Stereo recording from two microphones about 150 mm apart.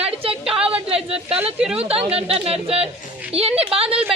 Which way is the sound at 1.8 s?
40° right (ahead or behind).